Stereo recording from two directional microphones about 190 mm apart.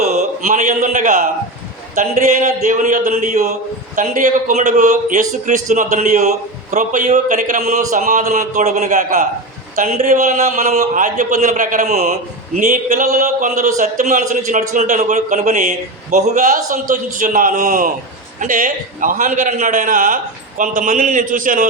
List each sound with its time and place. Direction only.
0.0 s a man's voice: 40° right (ahead or behind)